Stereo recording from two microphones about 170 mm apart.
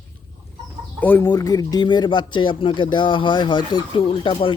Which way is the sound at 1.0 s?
15° left (ahead or behind).